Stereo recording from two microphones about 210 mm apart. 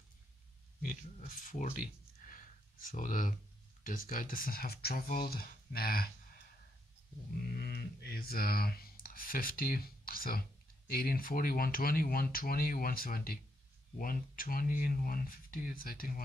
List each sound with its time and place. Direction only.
0.8 s speech: 40° left (ahead or behind)
7.4 s speech: 50° left (ahead or behind)